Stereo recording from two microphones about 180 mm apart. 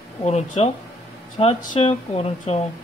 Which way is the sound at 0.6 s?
35° left (ahead or behind).